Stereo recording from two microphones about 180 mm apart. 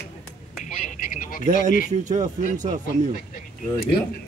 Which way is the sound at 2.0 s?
45° right (ahead or behind).